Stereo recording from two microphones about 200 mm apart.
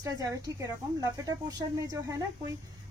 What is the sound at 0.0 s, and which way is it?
Speech, 15° right (ahead or behind).